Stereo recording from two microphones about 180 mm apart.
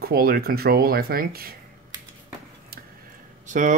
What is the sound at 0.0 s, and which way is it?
Speech, 55° right (ahead or behind).